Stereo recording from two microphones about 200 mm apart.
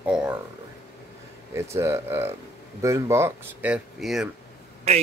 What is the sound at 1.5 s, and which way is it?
Speech, 15° right (ahead or behind).